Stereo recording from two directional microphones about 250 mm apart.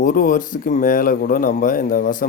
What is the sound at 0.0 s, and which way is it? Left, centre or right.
Speech, left.